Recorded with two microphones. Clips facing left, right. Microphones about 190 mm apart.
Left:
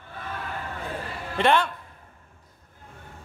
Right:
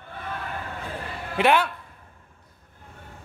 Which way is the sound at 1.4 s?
5° right (ahead or behind).